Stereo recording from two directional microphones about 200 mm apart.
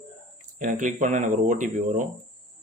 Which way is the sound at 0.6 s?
40° right (ahead or behind).